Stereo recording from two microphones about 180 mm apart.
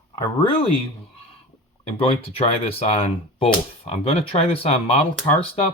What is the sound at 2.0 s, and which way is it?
Speech, 30° left (ahead or behind).